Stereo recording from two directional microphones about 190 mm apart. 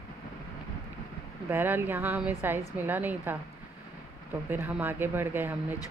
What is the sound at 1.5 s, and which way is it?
Speech, 10° right (ahead or behind).